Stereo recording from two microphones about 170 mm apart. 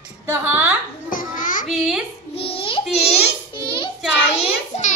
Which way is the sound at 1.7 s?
Centre (ahead or behind).